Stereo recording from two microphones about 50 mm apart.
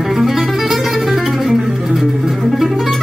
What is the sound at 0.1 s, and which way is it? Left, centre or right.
Music, centre.